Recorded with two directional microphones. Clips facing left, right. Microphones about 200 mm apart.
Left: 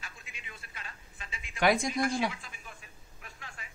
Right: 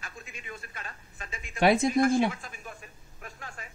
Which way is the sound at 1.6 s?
25° right (ahead or behind).